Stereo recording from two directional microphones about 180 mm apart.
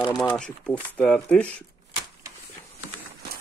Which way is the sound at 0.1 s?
5° left (ahead or behind).